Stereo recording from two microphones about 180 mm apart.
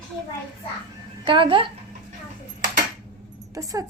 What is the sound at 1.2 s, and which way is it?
Speech, 30° right (ahead or behind).